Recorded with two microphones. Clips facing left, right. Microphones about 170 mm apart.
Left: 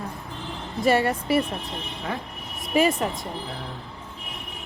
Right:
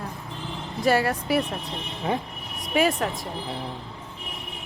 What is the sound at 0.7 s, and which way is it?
A woman's voice, centre (ahead or behind).